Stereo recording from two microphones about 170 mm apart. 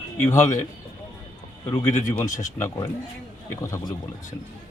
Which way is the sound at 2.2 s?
45° left (ahead or behind).